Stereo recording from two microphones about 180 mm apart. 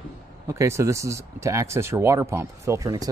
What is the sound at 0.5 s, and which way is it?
Speech, 15° right (ahead or behind).